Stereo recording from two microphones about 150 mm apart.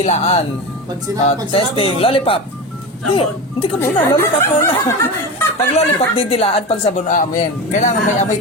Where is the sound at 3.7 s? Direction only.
15° left (ahead or behind).